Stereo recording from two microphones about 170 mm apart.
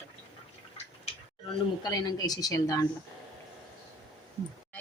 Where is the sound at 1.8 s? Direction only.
20° left (ahead or behind).